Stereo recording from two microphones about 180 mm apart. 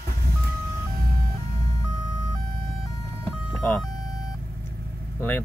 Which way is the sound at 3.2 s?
10° left (ahead or behind).